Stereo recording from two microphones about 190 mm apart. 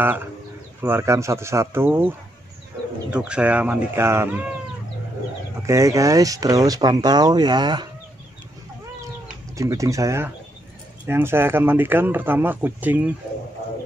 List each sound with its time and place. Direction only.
0.0 s speech: 10° right (ahead or behind)
5.6 s speech: 15° right (ahead or behind)
9.6 s speech: 15° right (ahead or behind)